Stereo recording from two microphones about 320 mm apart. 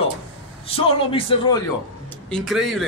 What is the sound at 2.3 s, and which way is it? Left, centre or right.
Speech, centre.